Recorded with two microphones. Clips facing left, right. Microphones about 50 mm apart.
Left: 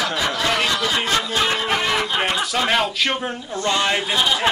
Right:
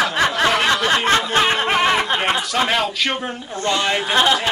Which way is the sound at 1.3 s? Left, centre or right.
Right.